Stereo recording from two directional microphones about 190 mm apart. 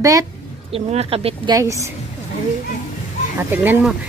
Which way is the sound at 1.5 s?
15° right (ahead or behind).